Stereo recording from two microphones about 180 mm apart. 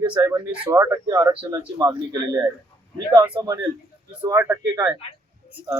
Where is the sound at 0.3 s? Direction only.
10° right (ahead or behind).